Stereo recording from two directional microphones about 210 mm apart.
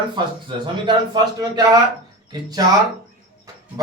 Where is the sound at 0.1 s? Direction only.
20° right (ahead or behind).